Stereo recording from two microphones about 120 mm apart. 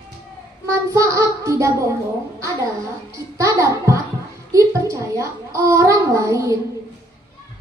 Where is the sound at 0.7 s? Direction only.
25° right (ahead or behind).